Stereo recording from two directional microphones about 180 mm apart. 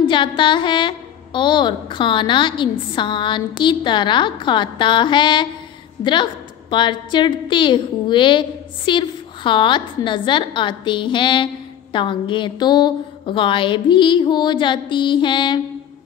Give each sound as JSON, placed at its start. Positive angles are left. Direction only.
{"t": 0.0, "sound": "a woman's voice", "side_deg": 25}